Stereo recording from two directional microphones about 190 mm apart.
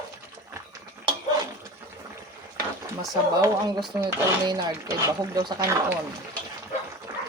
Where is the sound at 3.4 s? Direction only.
20° right (ahead or behind).